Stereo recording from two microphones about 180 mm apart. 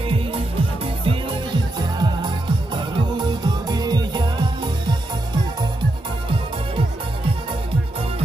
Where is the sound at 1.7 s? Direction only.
25° right (ahead or behind).